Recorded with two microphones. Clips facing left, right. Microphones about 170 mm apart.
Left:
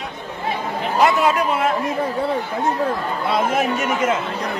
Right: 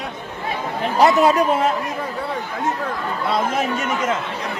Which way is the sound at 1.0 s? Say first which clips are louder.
Right 2 dB; 40° right (ahead or behind).